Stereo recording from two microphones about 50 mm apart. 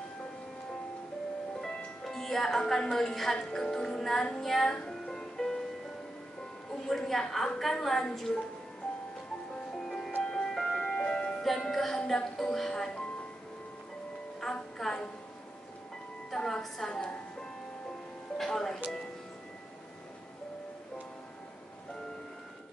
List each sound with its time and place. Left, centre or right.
1.6 s music: centre
6.7 s a woman's voice: centre
9.7 s music: centre
11.4 s a woman's voice: centre
14.4 s music: centre
16.3 s a woman's voice: centre